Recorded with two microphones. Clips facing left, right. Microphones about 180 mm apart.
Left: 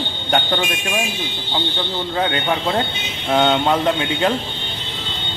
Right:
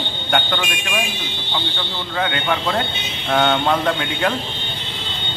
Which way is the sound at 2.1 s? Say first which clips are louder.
Even; 25° left (ahead or behind).